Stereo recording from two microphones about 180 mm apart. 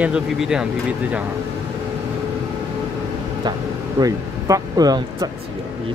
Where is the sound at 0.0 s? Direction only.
5° right (ahead or behind).